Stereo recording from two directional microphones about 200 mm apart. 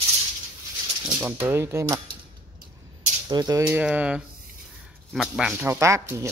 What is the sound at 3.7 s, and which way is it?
A man's voice, 5° right (ahead or behind).